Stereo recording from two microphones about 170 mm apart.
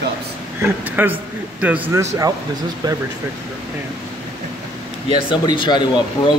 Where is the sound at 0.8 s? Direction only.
10° right (ahead or behind).